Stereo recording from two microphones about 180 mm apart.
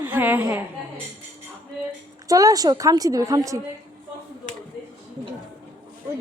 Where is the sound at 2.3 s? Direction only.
20° right (ahead or behind).